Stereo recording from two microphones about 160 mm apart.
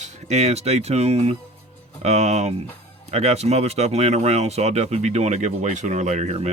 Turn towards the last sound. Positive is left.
turn(degrees=-45)  # may be behind; listen again after turning